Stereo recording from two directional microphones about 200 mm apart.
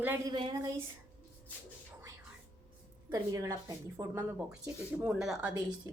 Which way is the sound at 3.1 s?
20° right (ahead or behind).